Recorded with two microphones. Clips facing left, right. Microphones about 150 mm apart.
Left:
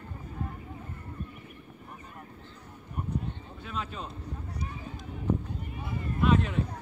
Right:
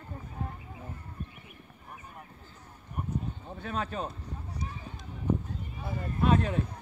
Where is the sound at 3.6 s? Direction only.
45° right (ahead or behind).